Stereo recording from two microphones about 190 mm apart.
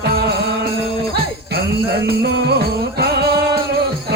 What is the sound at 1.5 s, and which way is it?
Music, 55° right (ahead or behind).